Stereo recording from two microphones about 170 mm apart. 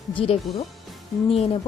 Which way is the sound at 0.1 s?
30° left (ahead or behind).